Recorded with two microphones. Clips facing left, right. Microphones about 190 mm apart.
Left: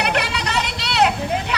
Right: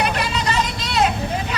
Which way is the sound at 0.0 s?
70° left (ahead or behind).